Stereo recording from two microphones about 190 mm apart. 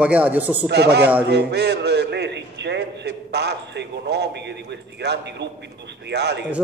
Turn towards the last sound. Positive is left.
turn(degrees=-60)  # may be behind; listen again after turning